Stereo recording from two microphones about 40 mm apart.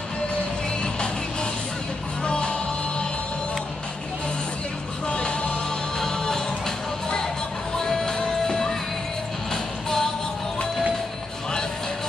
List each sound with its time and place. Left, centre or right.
0.9 s music: left
5.0 s music: left